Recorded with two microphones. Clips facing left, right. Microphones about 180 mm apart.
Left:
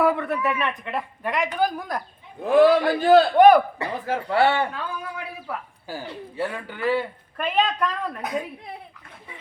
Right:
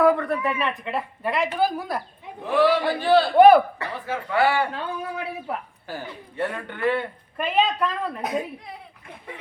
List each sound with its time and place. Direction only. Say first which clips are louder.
0.0 s speech: right 2 dB; 5° left (ahead or behind)
2.4 s a man's voice: left 4 dB; 45° left (ahead or behind)
3.3 s speech: right 3 dB; 5° right (ahead or behind)
4.0 s speech: left 1 dB; 35° left (ahead or behind)
4.7 s speech: right 2 dB; 25° right (ahead or behind)
5.9 s speech: left 1 dB; 10° left (ahead or behind)
7.4 s speech: right 1 dB; 5° right (ahead or behind)